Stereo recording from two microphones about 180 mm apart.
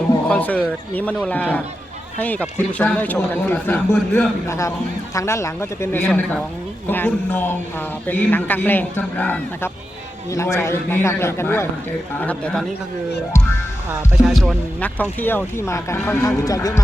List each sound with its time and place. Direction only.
0.3 s a man's voice: 10° left (ahead or behind)
14.3 s a man's voice: 5° left (ahead or behind)